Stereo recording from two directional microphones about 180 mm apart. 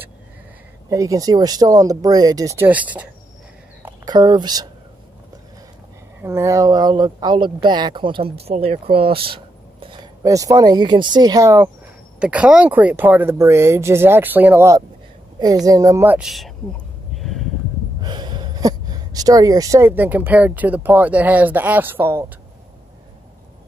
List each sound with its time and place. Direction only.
0.8 s speech: 20° right (ahead or behind)
3.8 s speech: 20° right (ahead or behind)
6.2 s speech: 15° right (ahead or behind); by 8.8 s 35° right (ahead or behind)
8.9 s a sound: 30° right (ahead or behind)
10.2 s speech: 20° right (ahead or behind)
15.3 s a sound: 20° right (ahead or behind); by 17.5 s centre (ahead or behind)
18.0 s speech: 25° right (ahead or behind)